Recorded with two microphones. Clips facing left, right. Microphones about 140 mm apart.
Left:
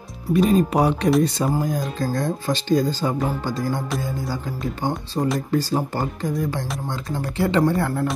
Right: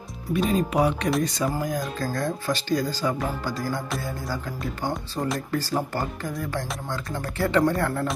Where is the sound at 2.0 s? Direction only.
25° left (ahead or behind).